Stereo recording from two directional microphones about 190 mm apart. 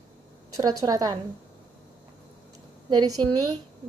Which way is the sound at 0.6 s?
20° right (ahead or behind).